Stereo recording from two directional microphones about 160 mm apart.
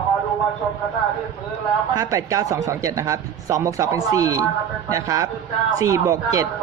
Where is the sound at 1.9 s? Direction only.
20° right (ahead or behind).